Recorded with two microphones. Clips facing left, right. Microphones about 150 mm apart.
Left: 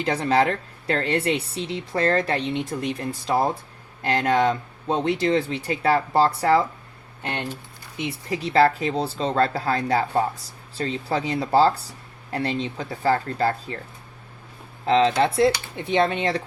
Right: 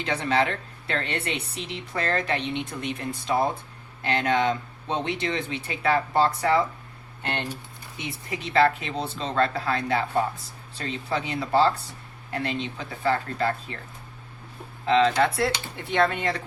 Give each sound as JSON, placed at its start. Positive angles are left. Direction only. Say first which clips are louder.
{"t": 0.0, "sound": "speech", "louder": "left 4 dB", "side_deg": 35}
{"t": 7.9, "sound": "speech", "louder": "left 6 dB", "side_deg": 30}
{"t": 14.8, "sound": "speech", "louder": "left 2 dB", "side_deg": 30}